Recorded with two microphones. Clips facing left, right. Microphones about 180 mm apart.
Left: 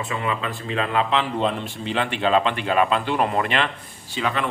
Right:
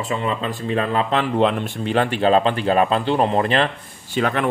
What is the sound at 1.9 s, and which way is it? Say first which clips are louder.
Speech: right 4 dB; 40° right (ahead or behind).